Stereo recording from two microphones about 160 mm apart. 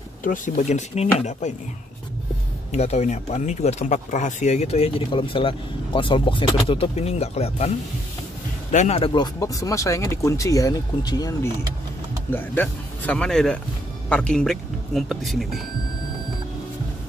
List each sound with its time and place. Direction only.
0.2 s speech: 55° left (ahead or behind)
2.7 s speech: 45° left (ahead or behind)
8.7 s speech: 45° left (ahead or behind); by 11.5 s 25° left (ahead or behind)
12.3 s speech: 10° left (ahead or behind)